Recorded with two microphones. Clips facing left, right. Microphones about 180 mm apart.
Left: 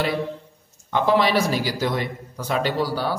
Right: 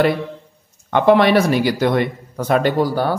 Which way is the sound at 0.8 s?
60° right (ahead or behind).